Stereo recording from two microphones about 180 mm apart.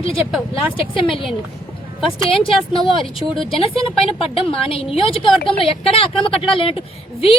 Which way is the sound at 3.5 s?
30° left (ahead or behind).